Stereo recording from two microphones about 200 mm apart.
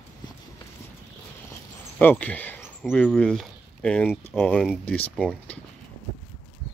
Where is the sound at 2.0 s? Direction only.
10° left (ahead or behind).